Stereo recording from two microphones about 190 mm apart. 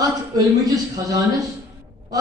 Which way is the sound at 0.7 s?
15° right (ahead or behind).